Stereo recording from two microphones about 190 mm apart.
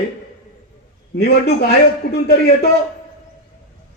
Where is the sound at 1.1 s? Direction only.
60° left (ahead or behind).